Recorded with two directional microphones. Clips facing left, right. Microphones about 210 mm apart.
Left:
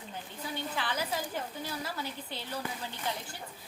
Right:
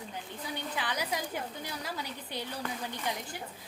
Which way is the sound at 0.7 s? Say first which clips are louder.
Even; 15° right (ahead or behind).